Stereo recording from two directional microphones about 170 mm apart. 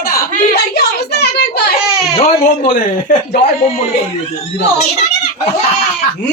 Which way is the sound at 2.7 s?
55° left (ahead or behind).